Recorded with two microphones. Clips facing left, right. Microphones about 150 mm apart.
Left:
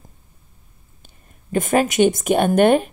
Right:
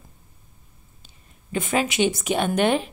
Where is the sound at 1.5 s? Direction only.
45° left (ahead or behind).